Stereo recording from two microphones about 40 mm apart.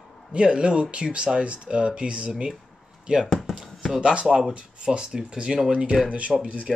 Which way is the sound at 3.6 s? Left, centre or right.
Centre.